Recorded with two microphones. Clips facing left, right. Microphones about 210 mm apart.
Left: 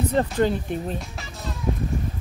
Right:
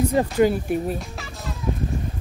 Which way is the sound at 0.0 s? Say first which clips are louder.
Right 3 dB; 10° right (ahead or behind).